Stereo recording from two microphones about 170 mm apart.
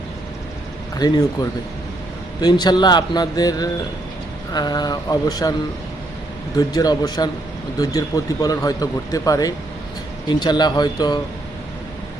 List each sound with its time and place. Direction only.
0.9 s speech: 25° left (ahead or behind)
2.4 s speech: 25° left (ahead or behind)
6.6 s speech: 20° left (ahead or behind)